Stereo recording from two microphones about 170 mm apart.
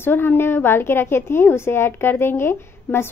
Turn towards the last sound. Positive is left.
turn(degrees=15)  # may be behind; listen again after turning